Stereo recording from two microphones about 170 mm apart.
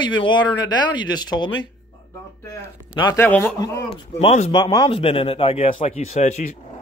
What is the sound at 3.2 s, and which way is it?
Speech, 10° left (ahead or behind).